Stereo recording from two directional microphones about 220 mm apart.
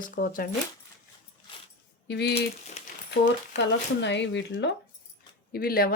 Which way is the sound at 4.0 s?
55° left (ahead or behind).